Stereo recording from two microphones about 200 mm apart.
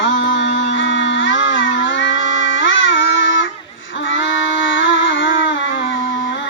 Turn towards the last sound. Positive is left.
turn(degrees=70)  # may be behind; listen again after turning